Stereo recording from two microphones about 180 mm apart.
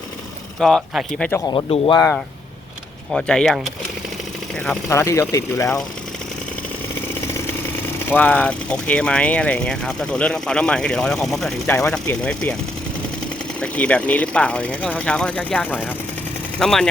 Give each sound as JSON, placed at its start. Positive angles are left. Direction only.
{"t": 0.6, "sound": "speech", "side_deg": 0}
{"t": 1.5, "sound": "speech", "side_deg": 25}
{"t": 3.1, "sound": "speech", "side_deg": 5}
{"t": 4.9, "sound": "speech", "side_deg": 15}
{"t": 7.8, "sound": "speech", "side_deg": 10}
{"t": 11.6, "sound": "speech", "side_deg": 15}
{"t": 11.9, "sound": "speech", "side_deg": 5}
{"t": 13.6, "sound": "speech", "side_deg": 5}